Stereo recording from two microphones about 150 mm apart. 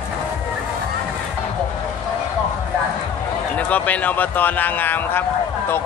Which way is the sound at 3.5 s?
10° left (ahead or behind).